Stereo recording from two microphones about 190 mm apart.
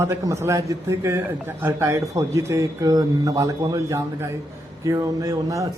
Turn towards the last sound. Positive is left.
turn(degrees=-15)  # may be behind; listen again after turning